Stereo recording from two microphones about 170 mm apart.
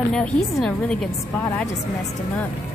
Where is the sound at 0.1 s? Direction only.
5° left (ahead or behind).